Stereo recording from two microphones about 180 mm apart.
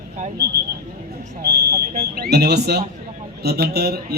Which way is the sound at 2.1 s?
60° right (ahead or behind).